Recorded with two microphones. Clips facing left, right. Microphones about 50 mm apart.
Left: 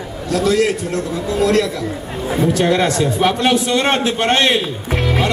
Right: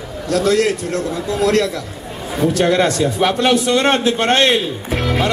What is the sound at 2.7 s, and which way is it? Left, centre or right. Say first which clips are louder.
Speech: even; centre.